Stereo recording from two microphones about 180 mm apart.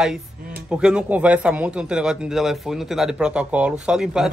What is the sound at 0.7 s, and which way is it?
Speech, 5° right (ahead or behind).